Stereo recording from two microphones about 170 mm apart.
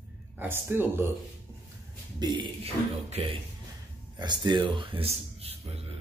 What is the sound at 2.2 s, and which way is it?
A man's voice, 30° right (ahead or behind).